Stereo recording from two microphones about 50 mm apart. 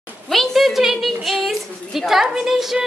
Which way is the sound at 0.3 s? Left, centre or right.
Centre.